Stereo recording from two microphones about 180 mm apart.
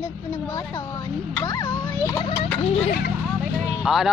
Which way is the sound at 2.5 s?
35° left (ahead or behind).